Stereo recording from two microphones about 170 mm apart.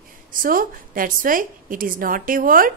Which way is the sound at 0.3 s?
55° right (ahead or behind).